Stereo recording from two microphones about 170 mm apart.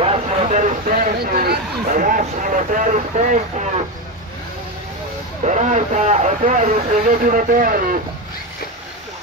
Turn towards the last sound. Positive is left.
turn(degrees=-55)  # may be behind; listen again after turning